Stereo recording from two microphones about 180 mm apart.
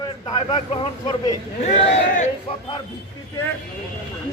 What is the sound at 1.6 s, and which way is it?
Speech, 40° left (ahead or behind).